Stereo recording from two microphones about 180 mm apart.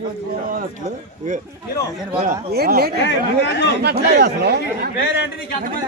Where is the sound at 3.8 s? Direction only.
60° right (ahead or behind).